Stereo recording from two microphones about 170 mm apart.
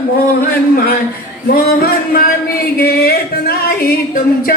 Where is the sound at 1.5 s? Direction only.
60° left (ahead or behind).